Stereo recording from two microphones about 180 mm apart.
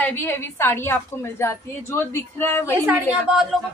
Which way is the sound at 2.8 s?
10° right (ahead or behind).